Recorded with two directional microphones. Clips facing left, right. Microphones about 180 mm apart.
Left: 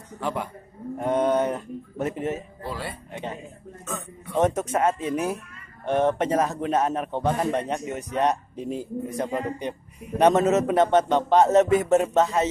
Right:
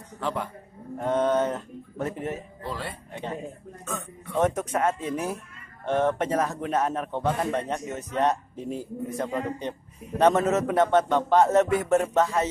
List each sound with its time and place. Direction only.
0.2 s speech: 10° left (ahead or behind)
2.6 s speech: 10° left (ahead or behind)
4.3 s a man's voice: 20° left (ahead or behind)